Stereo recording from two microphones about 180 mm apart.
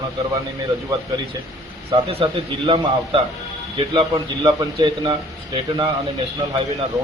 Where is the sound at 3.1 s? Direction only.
30° right (ahead or behind).